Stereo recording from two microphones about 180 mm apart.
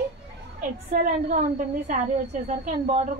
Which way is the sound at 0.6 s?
45° right (ahead or behind).